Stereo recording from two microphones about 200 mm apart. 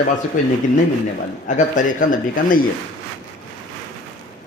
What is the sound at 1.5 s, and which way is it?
Speech, 40° left (ahead or behind).